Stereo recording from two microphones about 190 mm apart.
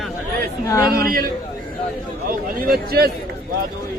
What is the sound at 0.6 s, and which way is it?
Speech, 15° left (ahead or behind).